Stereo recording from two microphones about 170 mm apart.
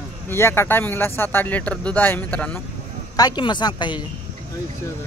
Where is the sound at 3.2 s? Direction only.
25° left (ahead or behind).